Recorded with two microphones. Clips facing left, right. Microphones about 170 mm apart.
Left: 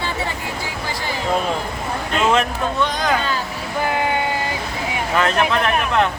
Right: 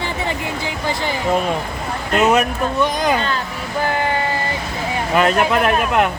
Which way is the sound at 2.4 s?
20° right (ahead or behind).